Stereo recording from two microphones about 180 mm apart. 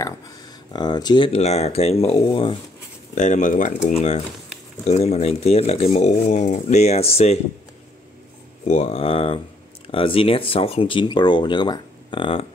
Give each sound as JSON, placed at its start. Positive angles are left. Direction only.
{"t": 0.7, "sound": "speech", "side_deg": 25}
{"t": 3.2, "sound": "speech", "side_deg": 45}
{"t": 4.8, "sound": "speech", "side_deg": 35}
{"t": 8.6, "sound": "speech", "side_deg": 35}